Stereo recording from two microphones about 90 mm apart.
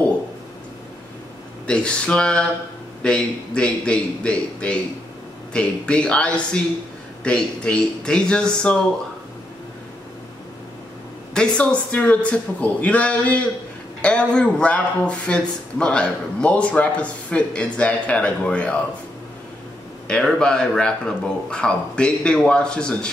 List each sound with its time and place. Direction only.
1.7 s speech: 10° left (ahead or behind)
11.3 s speech: 15° left (ahead or behind)
20.1 s speech: 5° left (ahead or behind)